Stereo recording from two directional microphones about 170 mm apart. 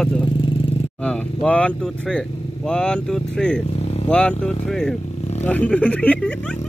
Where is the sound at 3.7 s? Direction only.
35° left (ahead or behind).